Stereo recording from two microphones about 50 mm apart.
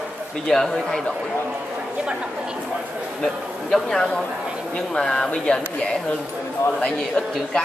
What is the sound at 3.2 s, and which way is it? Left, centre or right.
Speech, centre.